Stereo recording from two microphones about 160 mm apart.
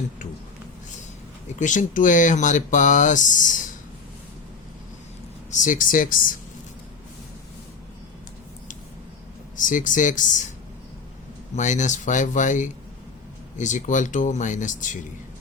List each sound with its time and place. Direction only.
1.5 s speech: 50° left (ahead or behind)
5.5 s speech: 50° left (ahead or behind)
9.6 s speech: 55° left (ahead or behind)
11.5 s speech: 50° left (ahead or behind)